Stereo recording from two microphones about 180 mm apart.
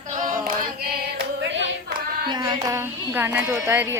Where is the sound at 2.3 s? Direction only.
25° right (ahead or behind).